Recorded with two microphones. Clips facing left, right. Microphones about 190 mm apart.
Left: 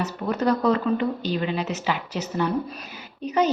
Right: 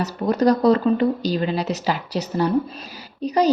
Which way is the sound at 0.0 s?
35° right (ahead or behind).